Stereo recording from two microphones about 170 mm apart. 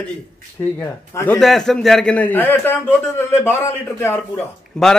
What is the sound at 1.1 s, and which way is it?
Speech, 10° left (ahead or behind).